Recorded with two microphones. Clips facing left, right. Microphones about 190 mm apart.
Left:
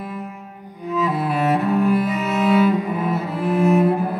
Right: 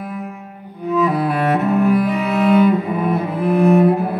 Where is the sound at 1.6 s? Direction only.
Centre (ahead or behind).